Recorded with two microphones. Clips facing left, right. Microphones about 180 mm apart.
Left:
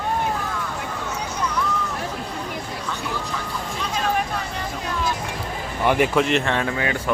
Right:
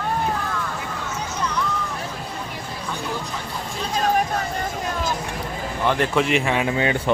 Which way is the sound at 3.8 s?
40° right (ahead or behind).